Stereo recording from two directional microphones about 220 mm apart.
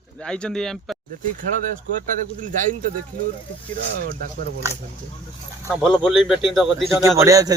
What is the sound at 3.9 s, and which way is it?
Speech, 45° right (ahead or behind).